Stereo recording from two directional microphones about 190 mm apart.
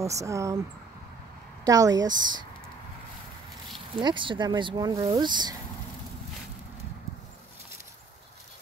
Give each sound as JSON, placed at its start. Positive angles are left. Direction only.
{"t": 0.0, "sound": "speech", "side_deg": -15}
{"t": 1.6, "sound": "speech", "side_deg": -20}
{"t": 3.9, "sound": "speech", "side_deg": -25}